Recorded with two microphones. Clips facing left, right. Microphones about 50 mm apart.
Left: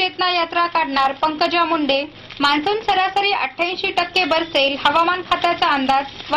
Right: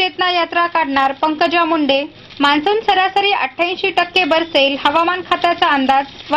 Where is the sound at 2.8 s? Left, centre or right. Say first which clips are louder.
Right 4 dB; right.